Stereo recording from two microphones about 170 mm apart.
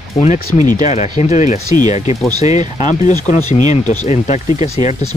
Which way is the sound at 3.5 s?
45° left (ahead or behind).